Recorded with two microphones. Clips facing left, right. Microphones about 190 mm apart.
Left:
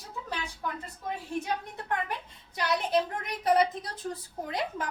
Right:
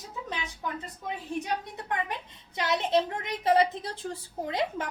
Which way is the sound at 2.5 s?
20° right (ahead or behind).